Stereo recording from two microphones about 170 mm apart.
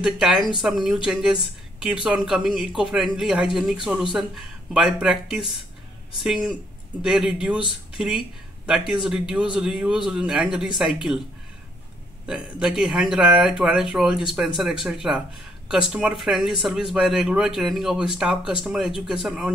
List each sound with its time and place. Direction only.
0.0 s speech: 5° right (ahead or behind)
12.3 s speech: 5° right (ahead or behind)